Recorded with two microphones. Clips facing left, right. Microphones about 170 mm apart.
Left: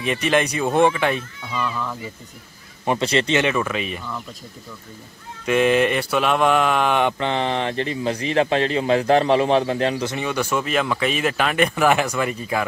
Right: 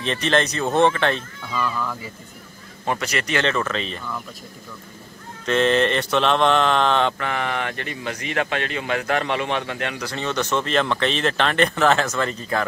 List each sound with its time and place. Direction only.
0.0 s speech: 10° left (ahead or behind)
2.8 s mantra: 20° left (ahead or behind)
3.4 s speech: 10° left (ahead or behind)
5.4 s mantra: 10° left (ahead or behind); by 10.1 s 30° left (ahead or behind)
10.1 s speech: 10° left (ahead or behind)